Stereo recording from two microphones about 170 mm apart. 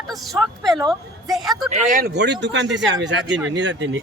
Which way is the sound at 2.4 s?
90° right.